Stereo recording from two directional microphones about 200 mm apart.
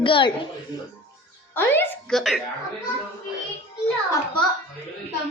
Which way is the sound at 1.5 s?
10° left (ahead or behind).